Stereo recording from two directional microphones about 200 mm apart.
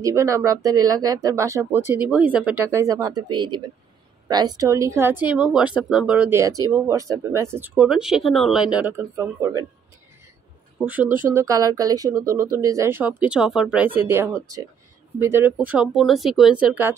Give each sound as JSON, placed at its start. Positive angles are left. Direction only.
{"t": 0.0, "sound": "speech", "side_deg": -15}
{"t": 10.9, "sound": "speech", "side_deg": -10}